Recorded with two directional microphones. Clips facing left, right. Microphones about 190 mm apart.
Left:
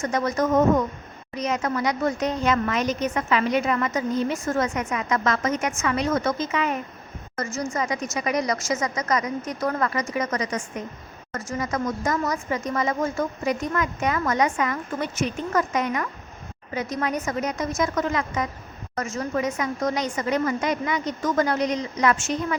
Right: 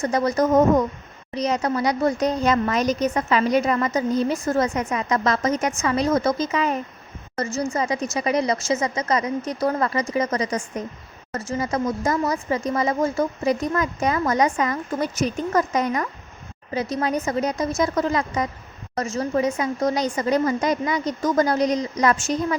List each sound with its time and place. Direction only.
0.0 s a woman's voice: 35° right (ahead or behind)